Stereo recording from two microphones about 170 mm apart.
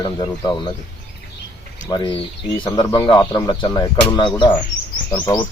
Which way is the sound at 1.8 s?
25° left (ahead or behind).